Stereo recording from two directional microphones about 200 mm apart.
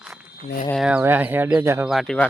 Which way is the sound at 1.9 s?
5° left (ahead or behind).